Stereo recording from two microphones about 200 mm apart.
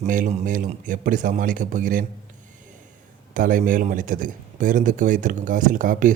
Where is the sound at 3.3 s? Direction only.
40° right (ahead or behind).